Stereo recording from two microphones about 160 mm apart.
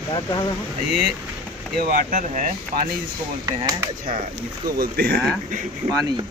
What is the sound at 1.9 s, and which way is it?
Speech, 50° right (ahead or behind).